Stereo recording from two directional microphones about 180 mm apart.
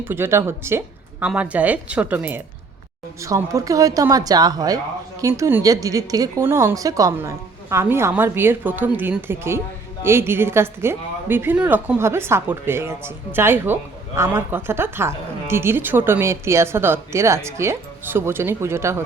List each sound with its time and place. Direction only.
0.0 s a woman's voice: 10° right (ahead or behind)